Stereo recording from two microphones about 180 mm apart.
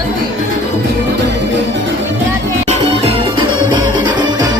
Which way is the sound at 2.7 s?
35° right (ahead or behind).